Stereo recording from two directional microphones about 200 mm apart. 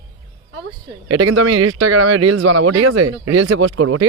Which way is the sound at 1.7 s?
80° right.